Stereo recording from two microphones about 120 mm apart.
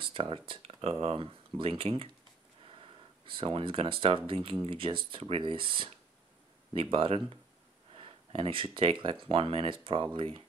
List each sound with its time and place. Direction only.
0.0 s speech: 50° right (ahead or behind)
3.3 s speech: 45° right (ahead or behind)